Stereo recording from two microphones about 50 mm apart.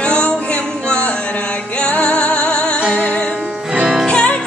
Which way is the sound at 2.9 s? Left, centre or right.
Left.